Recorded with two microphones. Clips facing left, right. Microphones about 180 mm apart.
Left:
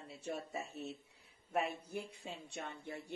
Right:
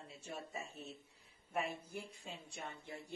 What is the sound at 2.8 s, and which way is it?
Speech, 70° left (ahead or behind).